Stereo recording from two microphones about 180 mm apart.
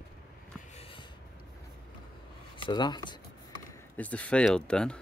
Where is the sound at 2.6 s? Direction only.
25° left (ahead or behind).